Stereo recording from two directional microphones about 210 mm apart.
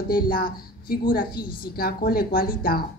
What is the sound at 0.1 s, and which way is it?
A woman's voice, 45° left (ahead or behind).